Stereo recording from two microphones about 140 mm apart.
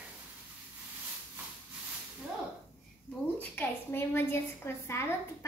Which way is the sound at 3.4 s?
15° left (ahead or behind).